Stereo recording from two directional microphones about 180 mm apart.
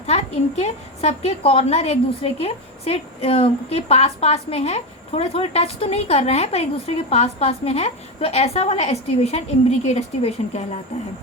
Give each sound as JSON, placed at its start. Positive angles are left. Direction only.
{"t": 0.0, "sound": "a woman's voice", "side_deg": 35}